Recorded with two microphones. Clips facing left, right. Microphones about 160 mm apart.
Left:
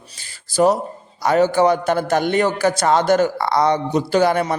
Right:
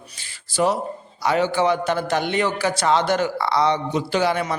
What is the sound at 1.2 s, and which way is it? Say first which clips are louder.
A man's voice: left 4 dB; 45° left (ahead or behind).